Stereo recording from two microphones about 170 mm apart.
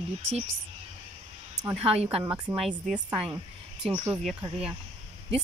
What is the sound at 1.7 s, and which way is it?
Speech, 40° right (ahead or behind).